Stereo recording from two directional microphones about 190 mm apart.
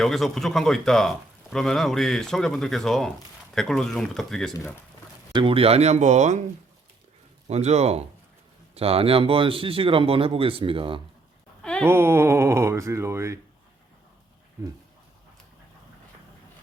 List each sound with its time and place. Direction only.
0.0 s speech: centre (ahead or behind)
5.3 s speech: 25° right (ahead or behind)
7.4 s speech: 35° right (ahead or behind)
11.6 s a sound: 5° left (ahead or behind)
11.9 s speech: 15° right (ahead or behind)
14.6 s speech: 15° right (ahead or behind)